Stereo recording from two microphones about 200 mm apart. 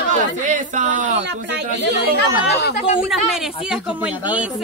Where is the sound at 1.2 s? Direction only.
55° right (ahead or behind).